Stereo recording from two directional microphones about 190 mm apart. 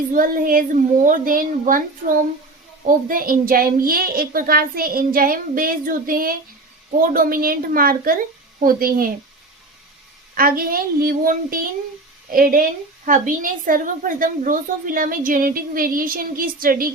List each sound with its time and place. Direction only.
0.1 s a woman's voice: 45° right (ahead or behind)
2.8 s a woman's voice: 50° right (ahead or behind)
10.3 s a woman's voice: 50° right (ahead or behind)